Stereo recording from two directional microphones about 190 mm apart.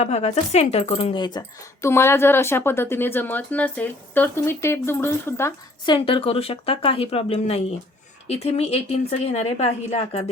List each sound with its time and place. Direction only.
0.0 s a woman's voice: 35° left (ahead or behind)